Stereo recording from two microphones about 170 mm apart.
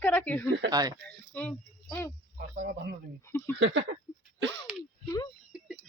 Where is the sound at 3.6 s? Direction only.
90° right.